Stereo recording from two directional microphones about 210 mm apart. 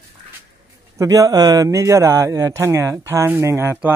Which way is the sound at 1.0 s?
15° right (ahead or behind).